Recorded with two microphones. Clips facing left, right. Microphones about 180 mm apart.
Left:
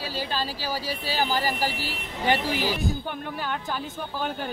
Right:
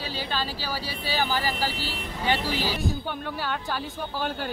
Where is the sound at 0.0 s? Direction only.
45° left (ahead or behind).